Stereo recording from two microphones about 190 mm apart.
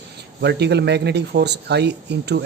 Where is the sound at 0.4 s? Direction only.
60° right (ahead or behind).